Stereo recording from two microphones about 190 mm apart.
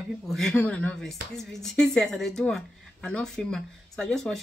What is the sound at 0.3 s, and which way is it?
Speech, 5° left (ahead or behind).